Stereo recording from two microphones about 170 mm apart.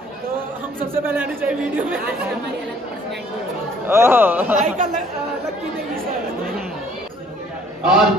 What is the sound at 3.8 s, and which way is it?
Speech, 15° right (ahead or behind).